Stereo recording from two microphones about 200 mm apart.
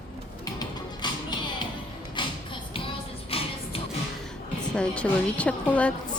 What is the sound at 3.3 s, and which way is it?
Music, 30° left (ahead or behind).